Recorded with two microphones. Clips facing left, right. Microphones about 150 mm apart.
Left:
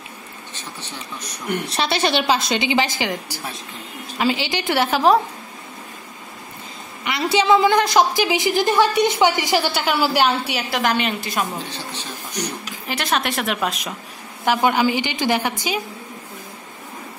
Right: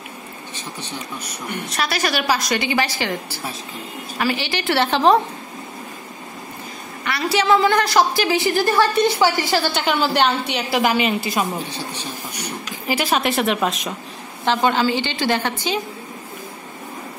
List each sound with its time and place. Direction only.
1.7 s a woman's voice: 30° left (ahead or behind); by 5.2 s 5° left (ahead or behind)
7.1 s a woman's voice: 20° left (ahead or behind); by 13.9 s centre (ahead or behind)
14.4 s a woman's voice: 10° left (ahead or behind)